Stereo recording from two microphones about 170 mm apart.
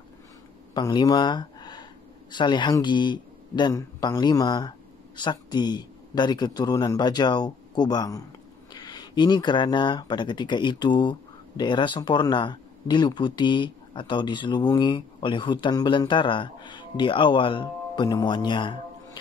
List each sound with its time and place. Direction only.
0.7 s speech: 25° left (ahead or behind)